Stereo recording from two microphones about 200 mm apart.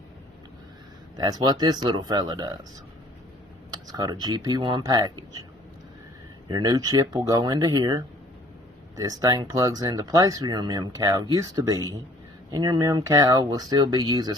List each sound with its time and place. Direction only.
1.1 s speech: 20° right (ahead or behind)
3.7 s speech: 20° right (ahead or behind)
6.5 s speech: 20° right (ahead or behind)